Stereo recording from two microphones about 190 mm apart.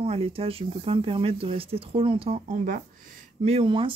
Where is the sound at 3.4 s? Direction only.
30° right (ahead or behind).